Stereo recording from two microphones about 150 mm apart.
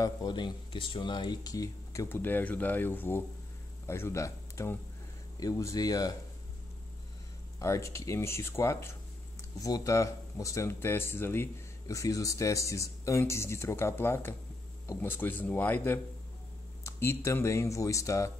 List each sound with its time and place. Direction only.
0.0 s speech: 25° left (ahead or behind)
7.5 s speech: 20° left (ahead or behind)